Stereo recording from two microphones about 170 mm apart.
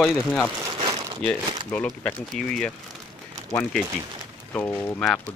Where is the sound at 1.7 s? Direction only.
5° left (ahead or behind).